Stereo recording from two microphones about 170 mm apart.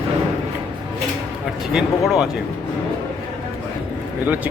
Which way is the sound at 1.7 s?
5° right (ahead or behind).